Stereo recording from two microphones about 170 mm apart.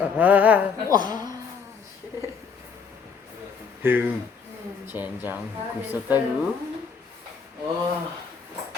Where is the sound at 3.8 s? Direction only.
10° right (ahead or behind).